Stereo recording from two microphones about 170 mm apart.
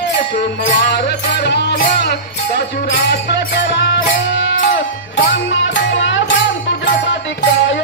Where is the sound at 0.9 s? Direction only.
80° left.